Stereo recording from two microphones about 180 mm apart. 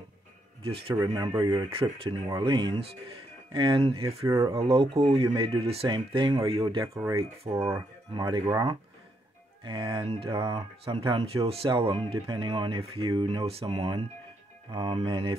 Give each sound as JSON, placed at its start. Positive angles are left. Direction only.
{"t": 0.7, "sound": "speech", "side_deg": -30}
{"t": 0.9, "sound": "speech", "side_deg": -20}
{"t": 1.7, "sound": "a man's voice", "side_deg": -30}
{"t": 4.3, "sound": "speech", "side_deg": -15}
{"t": 4.6, "sound": "a man's voice", "side_deg": -30}
{"t": 7.4, "sound": "speech", "side_deg": -15}
{"t": 8.1, "sound": "a man's voice", "side_deg": -25}